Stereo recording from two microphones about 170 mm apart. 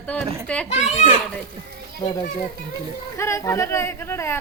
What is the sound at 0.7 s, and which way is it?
Speech, 40° left (ahead or behind).